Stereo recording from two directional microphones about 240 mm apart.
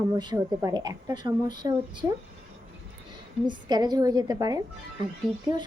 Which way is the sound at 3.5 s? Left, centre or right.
Centre.